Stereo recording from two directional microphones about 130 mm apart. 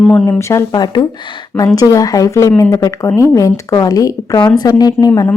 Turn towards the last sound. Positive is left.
turn(degrees=30)  # may be behind; listen again after turning